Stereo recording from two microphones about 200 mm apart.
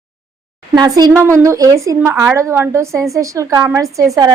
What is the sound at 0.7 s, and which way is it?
A woman's voice, 20° right (ahead or behind).